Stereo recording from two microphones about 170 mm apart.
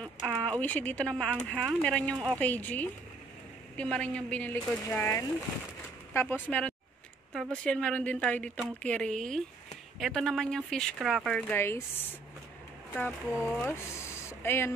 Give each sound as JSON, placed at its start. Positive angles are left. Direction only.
{"t": 0.0, "sound": "speech", "side_deg": 5}
{"t": 2.1, "sound": "speech", "side_deg": -20}
{"t": 2.4, "sound": "speech", "side_deg": 10}
{"t": 14.4, "sound": "speech", "side_deg": 15}